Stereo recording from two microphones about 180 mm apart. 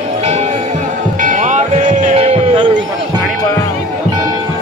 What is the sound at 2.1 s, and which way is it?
Music, 30° right (ahead or behind).